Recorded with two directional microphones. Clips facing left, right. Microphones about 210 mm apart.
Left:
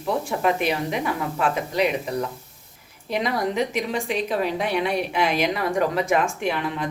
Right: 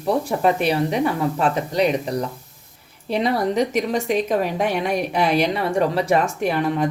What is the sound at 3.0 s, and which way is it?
A woman's voice, 35° right (ahead or behind).